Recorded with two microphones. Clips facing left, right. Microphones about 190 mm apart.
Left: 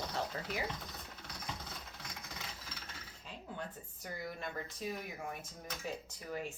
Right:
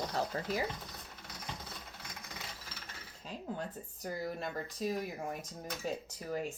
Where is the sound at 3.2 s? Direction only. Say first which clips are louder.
Right 5 dB; 40° right (ahead or behind).